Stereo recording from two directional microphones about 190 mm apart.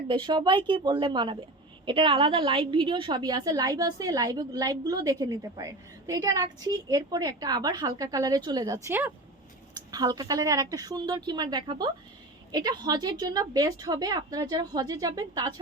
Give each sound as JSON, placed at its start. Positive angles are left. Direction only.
{"t": 0.1, "sound": "a woman's voice", "side_deg": -25}